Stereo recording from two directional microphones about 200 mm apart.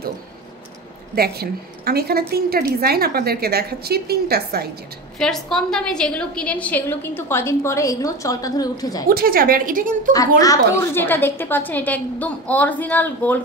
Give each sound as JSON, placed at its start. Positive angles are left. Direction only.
{"t": 1.1, "sound": "a woman's voice", "side_deg": -50}
{"t": 5.2, "sound": "a woman's voice", "side_deg": 5}
{"t": 9.1, "sound": "a woman's voice", "side_deg": -45}
{"t": 10.4, "sound": "a woman's voice", "side_deg": 15}